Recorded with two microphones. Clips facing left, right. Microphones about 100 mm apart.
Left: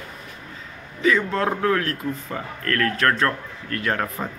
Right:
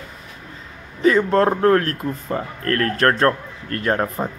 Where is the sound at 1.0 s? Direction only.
45° right (ahead or behind).